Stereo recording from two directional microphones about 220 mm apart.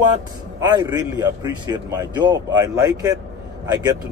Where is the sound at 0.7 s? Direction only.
20° right (ahead or behind).